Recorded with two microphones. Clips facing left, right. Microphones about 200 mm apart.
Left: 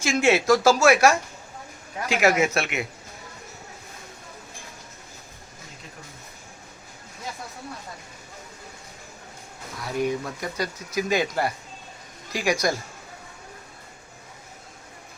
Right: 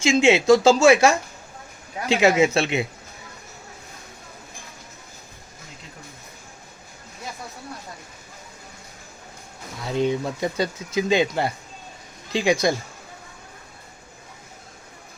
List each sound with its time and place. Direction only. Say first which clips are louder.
0.0 s speech: right 4 dB; 25° right (ahead or behind)
9.8 s speech: right 3 dB; 25° right (ahead or behind)